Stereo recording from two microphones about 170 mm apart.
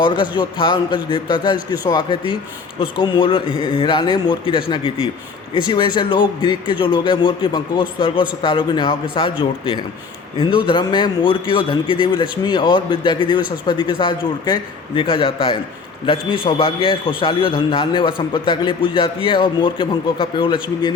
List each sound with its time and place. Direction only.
0.0 s a man's voice: 30° left (ahead or behind)
5.6 s a man's voice: 25° left (ahead or behind)
10.4 s a man's voice: 30° left (ahead or behind)